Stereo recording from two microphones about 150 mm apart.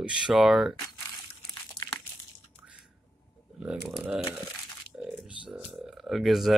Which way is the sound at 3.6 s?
5° right (ahead or behind).